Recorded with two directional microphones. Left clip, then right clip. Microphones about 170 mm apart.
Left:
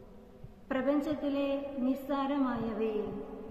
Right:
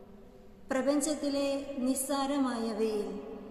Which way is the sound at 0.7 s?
15° right (ahead or behind).